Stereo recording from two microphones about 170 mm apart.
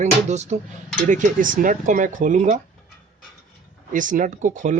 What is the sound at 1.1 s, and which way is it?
Speech, 50° right (ahead or behind).